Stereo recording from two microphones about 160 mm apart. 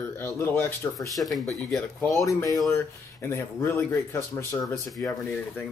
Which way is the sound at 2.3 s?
20° left (ahead or behind).